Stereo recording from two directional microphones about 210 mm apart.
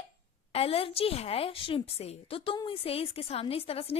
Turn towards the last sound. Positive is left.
turn(degrees=30)  # may be behind; listen again after turning